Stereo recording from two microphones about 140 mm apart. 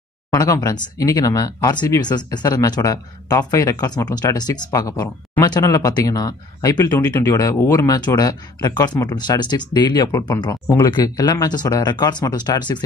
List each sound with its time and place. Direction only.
0.3 s speech: 30° left (ahead or behind)